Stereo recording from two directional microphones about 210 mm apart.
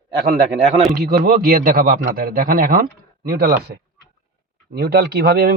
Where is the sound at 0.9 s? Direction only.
45° right (ahead or behind).